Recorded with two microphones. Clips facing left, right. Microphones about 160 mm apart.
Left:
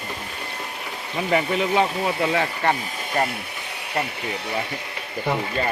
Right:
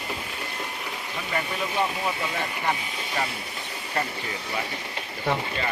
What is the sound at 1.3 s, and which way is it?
Speech, 80° left.